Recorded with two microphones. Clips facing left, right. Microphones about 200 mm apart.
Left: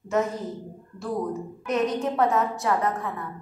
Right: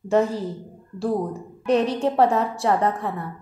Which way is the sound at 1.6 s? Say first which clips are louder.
Right 5 dB; 30° right (ahead or behind).